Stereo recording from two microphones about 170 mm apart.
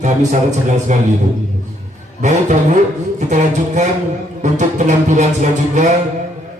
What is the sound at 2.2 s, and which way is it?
A man's voice, 45° right (ahead or behind).